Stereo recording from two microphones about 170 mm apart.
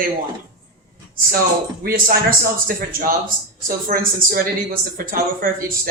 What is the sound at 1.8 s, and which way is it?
Speech, 55° right (ahead or behind).